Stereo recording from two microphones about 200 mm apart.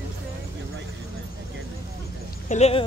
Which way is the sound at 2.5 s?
30° left (ahead or behind).